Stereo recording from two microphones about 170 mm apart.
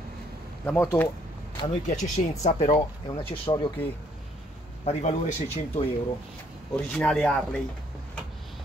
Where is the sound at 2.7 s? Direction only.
25° left (ahead or behind).